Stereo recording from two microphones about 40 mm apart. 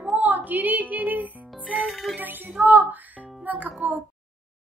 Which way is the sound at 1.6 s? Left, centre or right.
Right.